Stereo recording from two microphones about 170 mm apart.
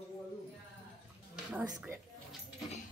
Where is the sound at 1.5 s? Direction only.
10° right (ahead or behind).